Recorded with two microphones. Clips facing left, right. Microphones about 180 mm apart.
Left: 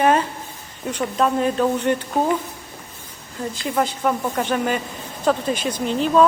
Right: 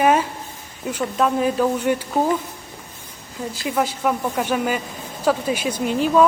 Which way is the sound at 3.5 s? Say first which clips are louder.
Even; 5° right (ahead or behind).